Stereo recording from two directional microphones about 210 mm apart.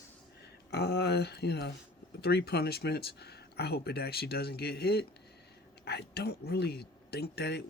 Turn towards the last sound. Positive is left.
turn(degrees=50)  # may be behind; listen again after turning